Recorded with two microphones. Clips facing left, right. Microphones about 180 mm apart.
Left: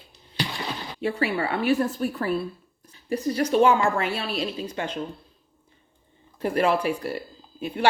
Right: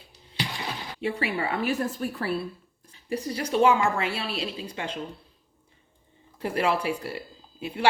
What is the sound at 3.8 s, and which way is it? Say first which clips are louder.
Speech: left 2 dB; 30° right (ahead or behind).